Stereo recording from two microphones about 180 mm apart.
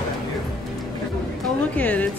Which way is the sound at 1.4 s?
5° left (ahead or behind).